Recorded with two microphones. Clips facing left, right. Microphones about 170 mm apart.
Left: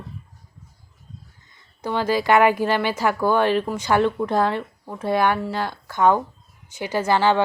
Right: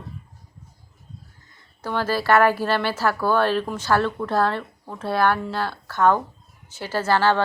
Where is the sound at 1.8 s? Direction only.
15° left (ahead or behind).